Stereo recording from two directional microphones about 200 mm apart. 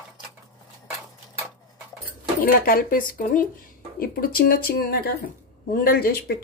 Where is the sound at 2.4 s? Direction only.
45° left (ahead or behind).